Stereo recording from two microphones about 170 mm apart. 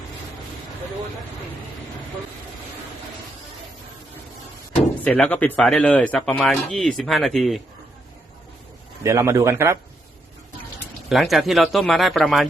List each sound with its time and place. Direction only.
5.0 s speech: 5° left (ahead or behind)
9.0 s a man's voice: 15° right (ahead or behind)
11.1 s speech: centre (ahead or behind)